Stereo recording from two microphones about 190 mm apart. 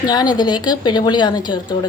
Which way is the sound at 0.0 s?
20° left (ahead or behind).